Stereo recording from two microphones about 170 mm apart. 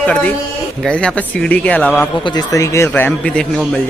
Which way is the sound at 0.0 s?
5° left (ahead or behind).